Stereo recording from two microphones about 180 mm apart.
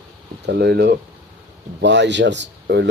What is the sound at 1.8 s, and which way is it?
Speech, 80° right.